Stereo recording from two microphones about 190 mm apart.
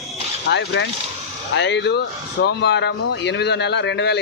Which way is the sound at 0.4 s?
65° left (ahead or behind).